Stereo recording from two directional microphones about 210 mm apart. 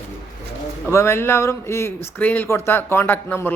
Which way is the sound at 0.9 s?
15° left (ahead or behind).